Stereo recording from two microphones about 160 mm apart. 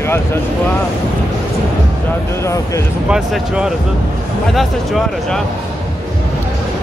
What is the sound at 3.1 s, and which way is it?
Speech, 5° right (ahead or behind).